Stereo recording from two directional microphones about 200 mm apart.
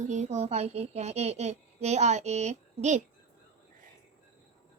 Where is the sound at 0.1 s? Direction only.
35° right (ahead or behind).